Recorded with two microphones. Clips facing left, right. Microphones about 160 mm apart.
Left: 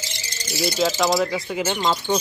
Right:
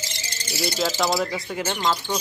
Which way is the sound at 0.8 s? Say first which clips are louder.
Left 3 dB; 5° right (ahead or behind).